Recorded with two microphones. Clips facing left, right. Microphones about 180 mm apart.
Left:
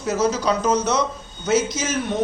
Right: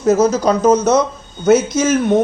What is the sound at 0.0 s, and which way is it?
A man's voice, 45° right (ahead or behind).